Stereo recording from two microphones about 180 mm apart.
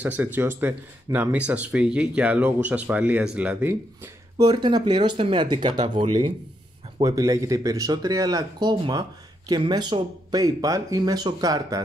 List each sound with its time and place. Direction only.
0.0 s speech: 10° right (ahead or behind)
4.4 s speech: 25° right (ahead or behind)